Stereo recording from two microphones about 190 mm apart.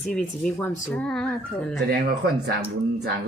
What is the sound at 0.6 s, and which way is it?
Speech, 5° left (ahead or behind).